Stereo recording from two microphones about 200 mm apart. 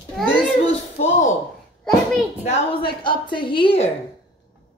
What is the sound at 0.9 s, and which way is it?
Speech, 35° left (ahead or behind).